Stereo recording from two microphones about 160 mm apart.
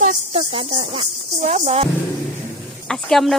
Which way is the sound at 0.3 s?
35° right (ahead or behind).